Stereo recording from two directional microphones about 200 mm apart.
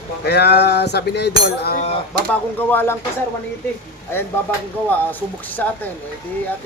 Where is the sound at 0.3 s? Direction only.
55° left (ahead or behind).